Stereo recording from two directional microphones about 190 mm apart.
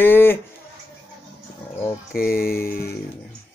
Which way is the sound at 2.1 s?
50° left (ahead or behind).